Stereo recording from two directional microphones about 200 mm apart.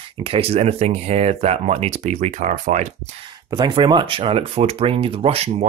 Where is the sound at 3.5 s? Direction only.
25° right (ahead or behind).